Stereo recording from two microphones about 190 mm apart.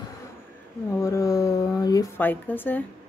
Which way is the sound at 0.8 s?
15° left (ahead or behind).